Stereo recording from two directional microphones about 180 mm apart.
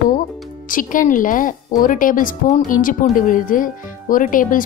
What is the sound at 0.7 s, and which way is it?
A woman's voice, 50° left (ahead or behind).